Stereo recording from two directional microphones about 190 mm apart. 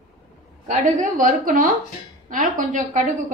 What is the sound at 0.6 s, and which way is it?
A woman's voice, 40° right (ahead or behind).